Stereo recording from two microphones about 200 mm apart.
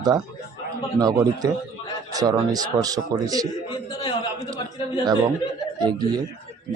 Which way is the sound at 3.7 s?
25° left (ahead or behind).